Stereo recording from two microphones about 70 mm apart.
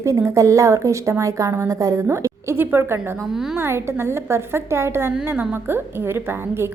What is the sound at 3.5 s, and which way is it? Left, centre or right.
A woman's voice, right.